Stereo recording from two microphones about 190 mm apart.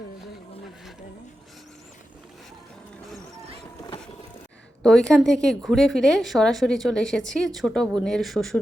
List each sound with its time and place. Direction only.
3.8 s vehicle: 25° left (ahead or behind)
4.8 s a woman's voice: 5° left (ahead or behind)